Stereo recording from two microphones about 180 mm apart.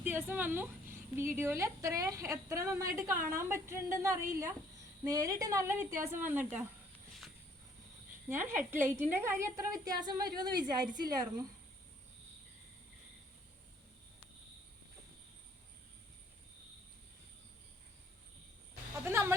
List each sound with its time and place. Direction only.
0.0 s a woman's voice: 10° right (ahead or behind)
8.5 s a woman's voice: 15° right (ahead or behind)
19.0 s a woman's voice: 15° right (ahead or behind)